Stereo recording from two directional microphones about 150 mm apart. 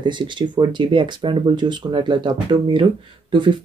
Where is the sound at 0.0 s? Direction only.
30° right (ahead or behind).